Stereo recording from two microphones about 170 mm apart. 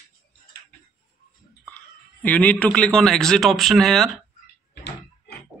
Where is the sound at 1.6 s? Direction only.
10° left (ahead or behind).